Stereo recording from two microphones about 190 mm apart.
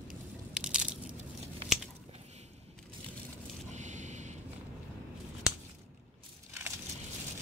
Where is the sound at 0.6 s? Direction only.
5° right (ahead or behind).